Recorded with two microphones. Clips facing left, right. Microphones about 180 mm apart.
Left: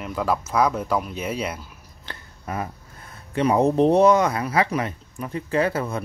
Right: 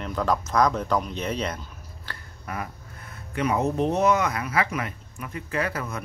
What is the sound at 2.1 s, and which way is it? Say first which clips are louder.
Speech: left 4 dB; 30° left (ahead or behind).